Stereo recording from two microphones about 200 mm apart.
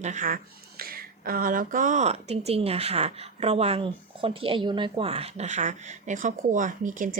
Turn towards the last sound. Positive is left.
turn(degrees=-40)  # may be behind; listen again after turning